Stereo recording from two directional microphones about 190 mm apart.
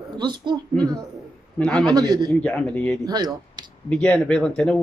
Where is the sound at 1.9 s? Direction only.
20° right (ahead or behind).